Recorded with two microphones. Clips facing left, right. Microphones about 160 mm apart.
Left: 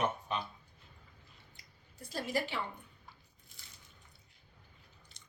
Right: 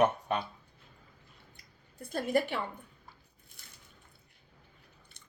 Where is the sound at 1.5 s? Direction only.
55° right (ahead or behind).